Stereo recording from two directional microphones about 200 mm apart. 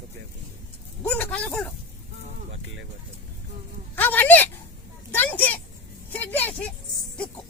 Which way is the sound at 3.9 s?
10° left (ahead or behind).